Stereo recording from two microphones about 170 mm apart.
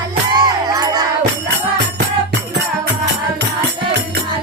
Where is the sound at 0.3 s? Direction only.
25° right (ahead or behind).